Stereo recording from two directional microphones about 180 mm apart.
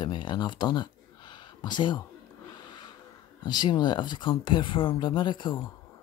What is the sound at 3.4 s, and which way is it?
Speech, 25° left (ahead or behind).